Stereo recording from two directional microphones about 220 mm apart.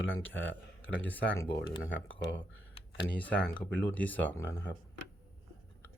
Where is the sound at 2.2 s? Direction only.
55° left (ahead or behind).